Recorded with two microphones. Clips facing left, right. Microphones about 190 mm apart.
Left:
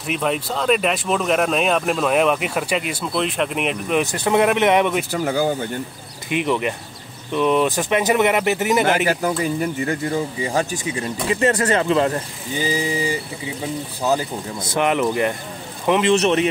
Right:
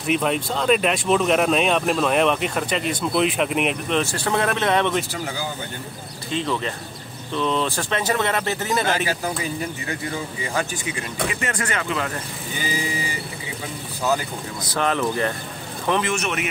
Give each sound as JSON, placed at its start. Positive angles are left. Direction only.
{"t": 0.0, "sound": "speech", "side_deg": 0}
{"t": 3.9, "sound": "speech", "side_deg": 15}
{"t": 5.1, "sound": "speech", "side_deg": 55}
{"t": 6.3, "sound": "speech", "side_deg": 15}
{"t": 9.4, "sound": "speech", "side_deg": 40}
{"t": 14.1, "sound": "a man's voice", "side_deg": 25}